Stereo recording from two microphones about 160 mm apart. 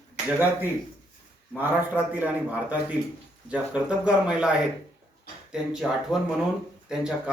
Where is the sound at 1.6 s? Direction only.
10° right (ahead or behind).